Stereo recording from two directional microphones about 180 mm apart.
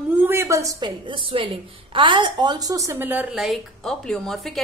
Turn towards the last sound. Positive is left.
turn(degrees=0)  # may be behind; listen again after turning